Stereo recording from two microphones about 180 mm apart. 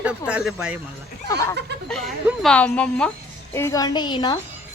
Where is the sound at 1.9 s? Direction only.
Centre (ahead or behind).